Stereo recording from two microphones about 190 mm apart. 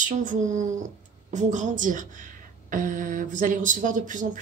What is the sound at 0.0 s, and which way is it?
A woman's voice, 40° right (ahead or behind).